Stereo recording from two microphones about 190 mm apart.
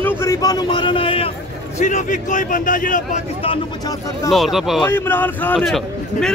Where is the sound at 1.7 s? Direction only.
40° left (ahead or behind).